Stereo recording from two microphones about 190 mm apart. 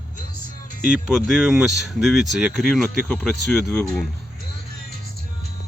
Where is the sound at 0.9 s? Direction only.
Centre (ahead or behind).